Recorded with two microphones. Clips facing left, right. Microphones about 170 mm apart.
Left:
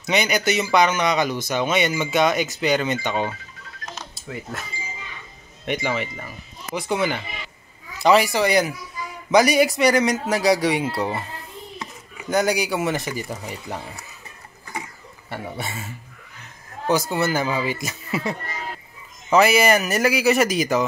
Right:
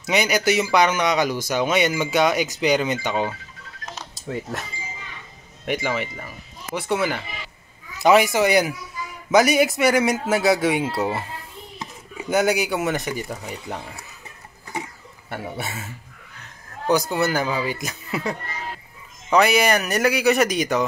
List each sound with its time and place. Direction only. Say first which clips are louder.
0.0 s speech: right 1 dB; 5° right (ahead or behind)
5.7 s speech: even; 5° right (ahead or behind)
11.8 s chopping: right 2 dB; 5° right (ahead or behind)
13.3 s speech: even; centre (ahead or behind)
15.2 s speech: right 1 dB; 5° right (ahead or behind)
17.1 s speech: even; centre (ahead or behind)
19.3 s speech: left 1 dB; 5° left (ahead or behind)